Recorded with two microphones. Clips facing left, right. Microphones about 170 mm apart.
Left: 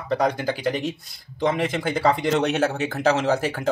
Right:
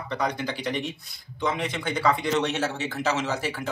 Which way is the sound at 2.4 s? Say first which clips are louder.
Left 5 dB; 60° left (ahead or behind).